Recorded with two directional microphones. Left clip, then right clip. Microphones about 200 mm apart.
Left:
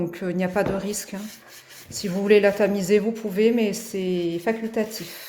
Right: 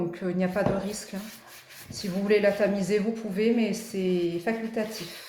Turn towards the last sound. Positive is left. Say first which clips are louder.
# left 5 dB
turn(degrees=45)  # may be behind; listen again after turning